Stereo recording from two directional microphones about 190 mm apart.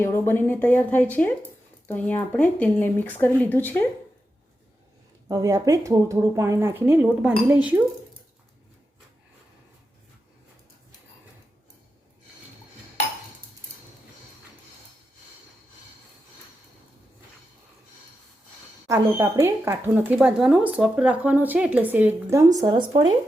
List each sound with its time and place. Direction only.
0.0 s speech: 10° left (ahead or behind)
5.3 s speech: 20° right (ahead or behind)
18.9 s speech: 15° right (ahead or behind)
22.5 s speech: 25° right (ahead or behind)